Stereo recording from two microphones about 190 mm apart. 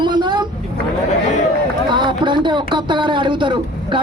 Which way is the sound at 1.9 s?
25° right (ahead or behind).